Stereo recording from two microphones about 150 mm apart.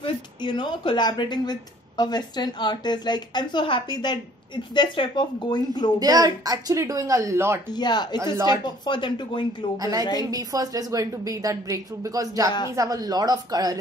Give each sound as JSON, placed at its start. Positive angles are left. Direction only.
{"t": 0.0, "sound": "a woman's voice", "side_deg": 30}
{"t": 5.9, "sound": "a woman's voice", "side_deg": -25}
{"t": 7.7, "sound": "a woman's voice", "side_deg": 30}
{"t": 9.8, "sound": "a woman's voice", "side_deg": -25}